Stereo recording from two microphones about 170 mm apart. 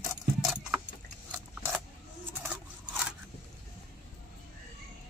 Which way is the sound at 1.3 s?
10° right (ahead or behind).